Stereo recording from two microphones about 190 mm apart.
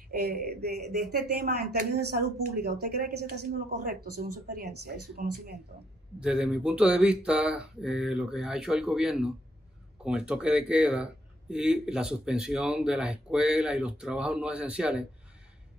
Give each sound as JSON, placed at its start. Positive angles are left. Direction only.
{"t": 0.1, "sound": "speech", "side_deg": -55}
{"t": 6.1, "sound": "speech", "side_deg": -5}